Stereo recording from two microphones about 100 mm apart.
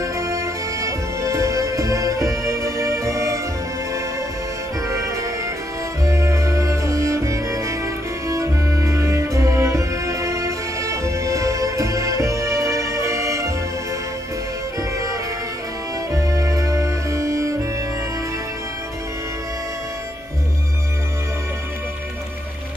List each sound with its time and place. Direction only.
0.0 s music: 30° right (ahead or behind)
4.8 s music: 30° right (ahead or behind)
14.8 s music: 35° right (ahead or behind)